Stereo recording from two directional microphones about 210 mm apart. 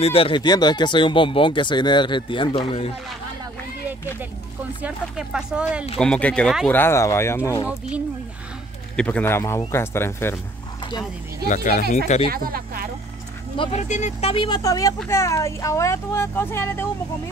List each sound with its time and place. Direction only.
0.0 s speech: 25° left (ahead or behind)
4.8 s speech: 5° right (ahead or behind)
6.8 s speech: 15° left (ahead or behind)
8.9 s speech: 5° left (ahead or behind)
11.4 s speech: 35° left (ahead or behind)
12.3 s speech: 45° right (ahead or behind)
13.6 s speech: 30° left (ahead or behind); by 16.9 s 10° left (ahead or behind)